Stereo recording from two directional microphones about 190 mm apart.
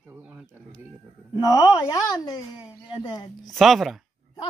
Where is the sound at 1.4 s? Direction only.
20° left (ahead or behind).